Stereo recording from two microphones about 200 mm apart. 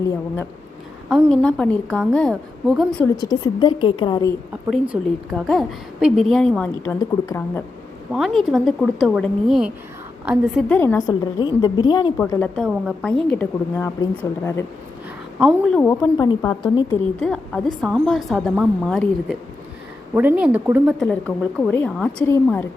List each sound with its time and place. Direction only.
1.1 s a woman's voice: 5° left (ahead or behind)
3.2 s a woman's voice: 20° left (ahead or behind)
4.7 s a woman's voice: centre (ahead or behind)
8.1 s a woman's voice: centre (ahead or behind); by 12.1 s 20° left (ahead or behind)
12.1 s a woman's voice: 10° left (ahead or behind)
15.4 s a woman's voice: centre (ahead or behind)
16.9 s a woman's voice: 5° left (ahead or behind)
21.0 s a woman's voice: 5° left (ahead or behind)